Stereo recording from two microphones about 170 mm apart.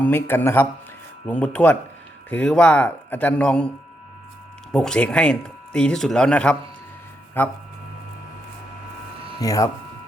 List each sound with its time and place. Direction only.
0.0 s speech: 10° left (ahead or behind)
4.7 s speech: 5° left (ahead or behind)
9.4 s speech: 20° left (ahead or behind)